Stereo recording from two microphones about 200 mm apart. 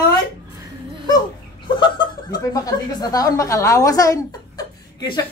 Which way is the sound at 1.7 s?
25° left (ahead or behind).